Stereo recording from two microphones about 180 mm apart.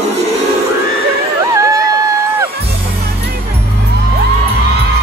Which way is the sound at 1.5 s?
20° right (ahead or behind).